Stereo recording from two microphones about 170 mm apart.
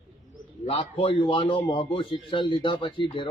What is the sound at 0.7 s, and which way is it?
A man's voice, 35° left (ahead or behind).